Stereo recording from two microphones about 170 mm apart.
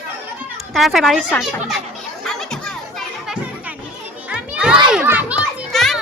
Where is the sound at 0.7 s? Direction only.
Centre (ahead or behind).